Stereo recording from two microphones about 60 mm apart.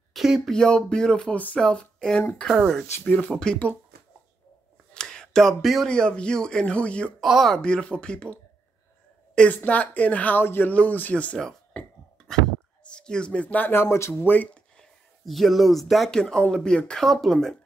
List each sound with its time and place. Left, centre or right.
0.1 s a sound: centre
0.5 s speech: centre
1.3 s speech: left
3.0 s speech: left
4.9 s a sound: centre
5.9 s speech: centre
7.2 s speech: centre
7.5 s speech: centre
9.5 s speech: left
11.7 s a sound: left
12.9 s speech: centre
13.7 s speech: left
14.1 s speech: left
15.2 s speech: centre